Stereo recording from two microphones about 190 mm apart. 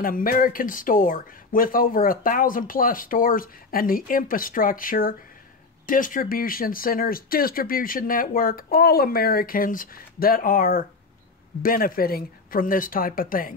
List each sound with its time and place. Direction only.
0.0 s speech: 50° left (ahead or behind)